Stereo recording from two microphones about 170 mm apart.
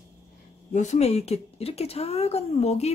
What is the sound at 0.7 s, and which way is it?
Speech, 40° left (ahead or behind).